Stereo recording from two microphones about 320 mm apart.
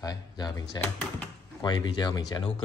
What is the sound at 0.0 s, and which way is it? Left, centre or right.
Speech, centre.